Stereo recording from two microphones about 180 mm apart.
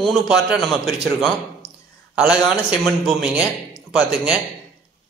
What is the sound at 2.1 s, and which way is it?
A woman's voice, 5° right (ahead or behind).